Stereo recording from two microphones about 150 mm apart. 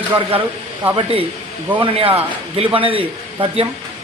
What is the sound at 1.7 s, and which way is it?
A man's voice, 40° right (ahead or behind).